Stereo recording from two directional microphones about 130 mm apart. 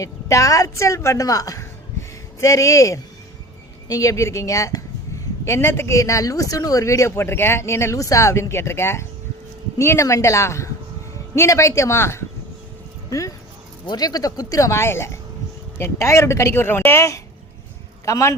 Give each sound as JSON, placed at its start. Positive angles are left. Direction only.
{"t": 0.0, "sound": "a woman's voice", "side_deg": 25}